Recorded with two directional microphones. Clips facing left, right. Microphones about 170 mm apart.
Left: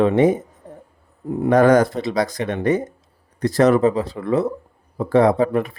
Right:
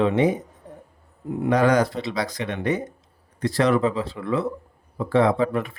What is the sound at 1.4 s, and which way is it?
Speech, 50° left (ahead or behind).